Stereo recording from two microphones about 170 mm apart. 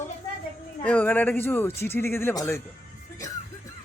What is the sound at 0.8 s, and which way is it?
Speech, 10° left (ahead or behind).